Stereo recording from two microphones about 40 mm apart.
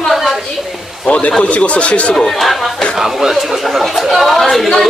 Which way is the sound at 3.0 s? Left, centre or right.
Centre.